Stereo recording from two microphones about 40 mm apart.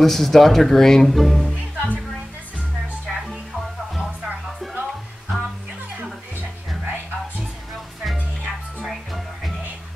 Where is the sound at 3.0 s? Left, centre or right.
Centre.